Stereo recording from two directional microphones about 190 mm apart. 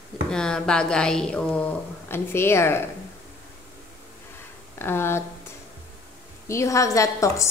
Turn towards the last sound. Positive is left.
turn(degrees=15)  # may be behind; listen again after turning